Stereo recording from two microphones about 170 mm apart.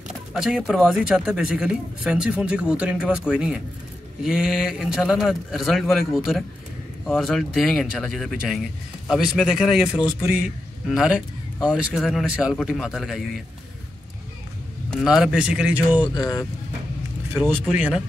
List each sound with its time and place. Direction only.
0.3 s speech: 5° right (ahead or behind)
14.9 s speech: centre (ahead or behind)
16.0 s speech: 20° left (ahead or behind)
17.3 s speech: 10° right (ahead or behind)